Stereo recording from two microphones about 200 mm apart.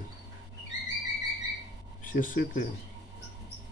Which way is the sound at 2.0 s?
40° left (ahead or behind).